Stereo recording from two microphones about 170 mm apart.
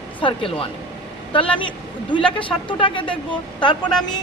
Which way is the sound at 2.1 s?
30° left (ahead or behind).